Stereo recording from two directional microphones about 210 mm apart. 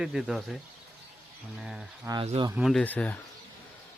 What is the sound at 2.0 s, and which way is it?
Speech, 25° right (ahead or behind).